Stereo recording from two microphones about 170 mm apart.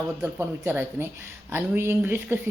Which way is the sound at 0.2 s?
15° right (ahead or behind).